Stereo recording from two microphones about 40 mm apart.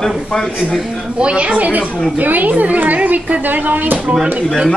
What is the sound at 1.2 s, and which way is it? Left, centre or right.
A woman's voice, right.